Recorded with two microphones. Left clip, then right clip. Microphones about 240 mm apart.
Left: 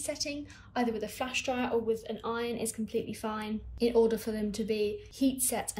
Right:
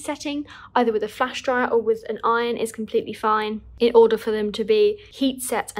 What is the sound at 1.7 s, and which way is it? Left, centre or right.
Speech, centre.